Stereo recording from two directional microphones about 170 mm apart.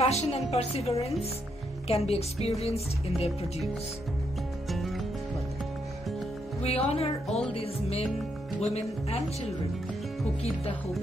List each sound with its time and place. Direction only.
0.0 s a woman's voice: 40° left (ahead or behind)
4.6 s music: centre (ahead or behind)
6.6 s a woman's voice: 35° left (ahead or behind)
10.4 s a woman's voice: 35° left (ahead or behind)